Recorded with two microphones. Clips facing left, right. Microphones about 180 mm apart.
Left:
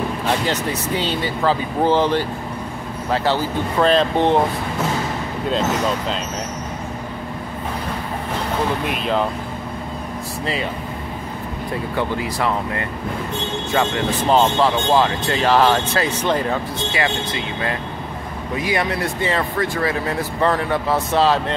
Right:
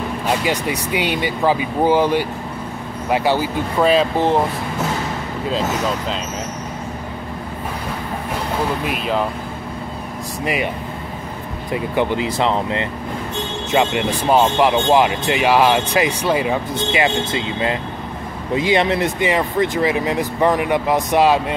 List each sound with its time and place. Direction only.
0.3 s speech: 10° right (ahead or behind)
5.5 s speech: centre (ahead or behind)
8.8 s speech: 5° right (ahead or behind)
10.4 s speech: 15° right (ahead or behind)
11.7 s speech: 20° right (ahead or behind)
16.9 s speech: 25° right (ahead or behind)